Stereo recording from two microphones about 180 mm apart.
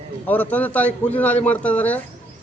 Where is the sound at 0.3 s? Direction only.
10° left (ahead or behind).